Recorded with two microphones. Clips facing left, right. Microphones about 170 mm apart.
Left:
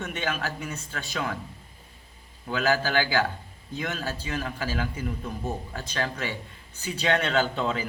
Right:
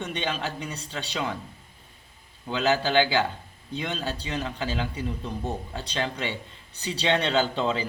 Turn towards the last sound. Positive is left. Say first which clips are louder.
# right 1 dB
turn(degrees=-20)  # may be behind; listen again after turning